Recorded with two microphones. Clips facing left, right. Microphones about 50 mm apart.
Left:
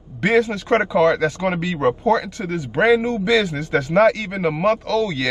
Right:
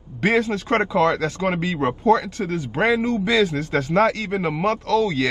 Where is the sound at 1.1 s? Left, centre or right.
Left.